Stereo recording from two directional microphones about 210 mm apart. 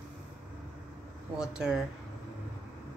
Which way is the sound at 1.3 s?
5° right (ahead or behind).